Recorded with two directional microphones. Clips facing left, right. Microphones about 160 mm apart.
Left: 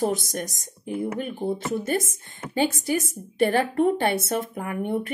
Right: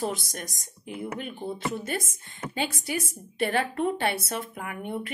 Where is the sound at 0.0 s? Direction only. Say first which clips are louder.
Left 6 dB; 40° left (ahead or behind).